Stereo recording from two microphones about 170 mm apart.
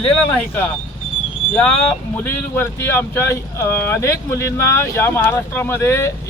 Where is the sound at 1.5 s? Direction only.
5° left (ahead or behind).